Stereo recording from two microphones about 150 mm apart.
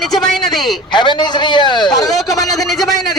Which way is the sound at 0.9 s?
30° left (ahead or behind).